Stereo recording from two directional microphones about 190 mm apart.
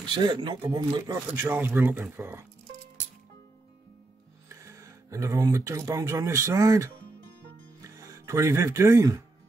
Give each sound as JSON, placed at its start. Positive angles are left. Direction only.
{"t": 0.0, "sound": "speech", "side_deg": -25}
{"t": 4.5, "sound": "speech", "side_deg": -15}